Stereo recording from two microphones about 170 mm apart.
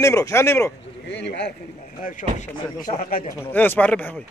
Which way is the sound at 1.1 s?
85° left.